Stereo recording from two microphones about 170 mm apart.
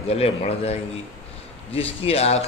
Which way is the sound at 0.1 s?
35° left (ahead or behind).